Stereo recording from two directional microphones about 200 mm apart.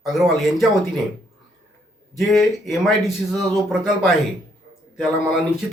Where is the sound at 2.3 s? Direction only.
Centre (ahead or behind).